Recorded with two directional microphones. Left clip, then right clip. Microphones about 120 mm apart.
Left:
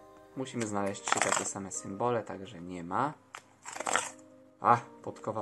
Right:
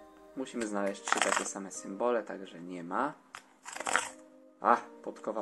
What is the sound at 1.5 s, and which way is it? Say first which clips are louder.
Speech: left 1 dB; 15° left (ahead or behind).